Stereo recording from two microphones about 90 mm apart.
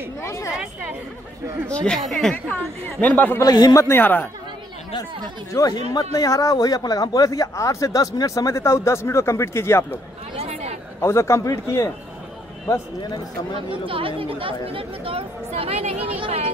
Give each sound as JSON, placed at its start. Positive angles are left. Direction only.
{"t": 0.2, "sound": "speech", "side_deg": 30}
{"t": 1.7, "sound": "a woman's voice", "side_deg": 10}
{"t": 2.3, "sound": "speech", "side_deg": 15}
{"t": 3.3, "sound": "a man's voice", "side_deg": 45}
{"t": 3.9, "sound": "speech", "side_deg": 20}
{"t": 5.5, "sound": "speech", "side_deg": 40}
{"t": 11.0, "sound": "speech", "side_deg": 30}
{"t": 13.6, "sound": "speech", "side_deg": -80}